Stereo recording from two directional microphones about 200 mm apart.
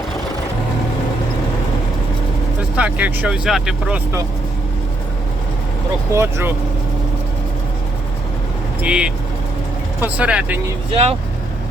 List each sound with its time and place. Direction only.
2.7 s speech: 5° right (ahead or behind)
6.1 s speech: 10° right (ahead or behind)
8.8 s speech: 5° right (ahead or behind)
10.9 s speech: 30° right (ahead or behind)